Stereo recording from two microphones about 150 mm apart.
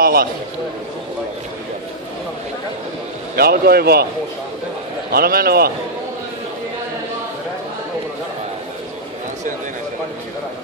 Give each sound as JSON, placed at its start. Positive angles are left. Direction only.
{"t": 0.0, "sound": "a sound", "side_deg": -85}
{"t": 3.3, "sound": "a man's voice", "side_deg": -90}
{"t": 5.1, "sound": "a man's voice", "side_deg": -90}